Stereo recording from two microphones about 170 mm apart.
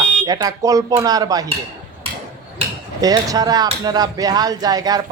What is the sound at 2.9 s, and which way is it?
A man's voice, 20° right (ahead or behind).